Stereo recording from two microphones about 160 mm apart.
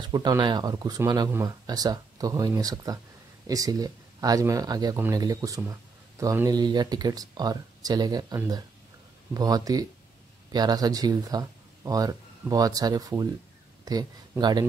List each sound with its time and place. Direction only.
0.0 s speech: 25° right (ahead or behind)